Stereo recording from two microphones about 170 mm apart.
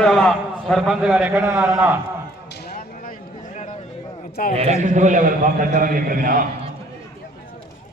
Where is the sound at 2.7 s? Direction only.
55° left (ahead or behind).